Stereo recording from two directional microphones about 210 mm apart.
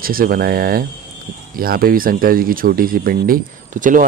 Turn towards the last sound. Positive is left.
turn(degrees=-40)  # may be behind; listen again after turning